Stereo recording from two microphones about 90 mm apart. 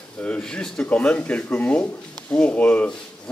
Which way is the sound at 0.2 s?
10° left (ahead or behind).